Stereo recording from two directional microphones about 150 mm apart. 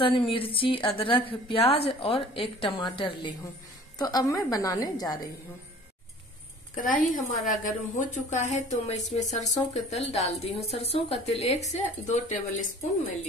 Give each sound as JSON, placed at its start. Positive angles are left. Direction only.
{"t": 0.0, "sound": "a woman's voice", "side_deg": 35}
{"t": 6.7, "sound": "a woman's voice", "side_deg": 65}
{"t": 8.0, "sound": "a woman's voice", "side_deg": 55}